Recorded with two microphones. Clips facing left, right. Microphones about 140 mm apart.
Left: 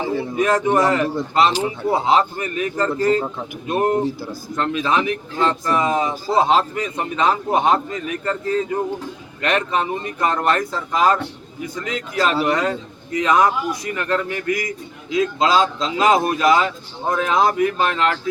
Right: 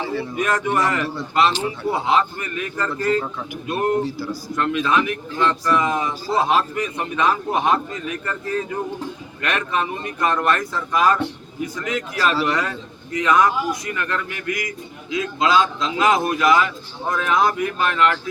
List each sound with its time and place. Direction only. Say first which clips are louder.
0.0 s speech: left 3 dB; 20° left (ahead or behind)
4.2 s speech: right 2 dB; 50° left (ahead or behind)
4.5 s speech: even; 25° left (ahead or behind)